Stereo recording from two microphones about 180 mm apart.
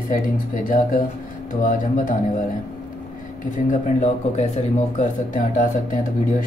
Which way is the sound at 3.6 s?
40° left (ahead or behind).